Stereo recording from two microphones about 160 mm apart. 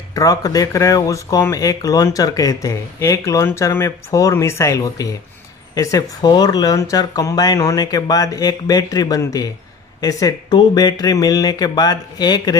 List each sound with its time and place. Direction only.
0.1 s speech: 20° left (ahead or behind)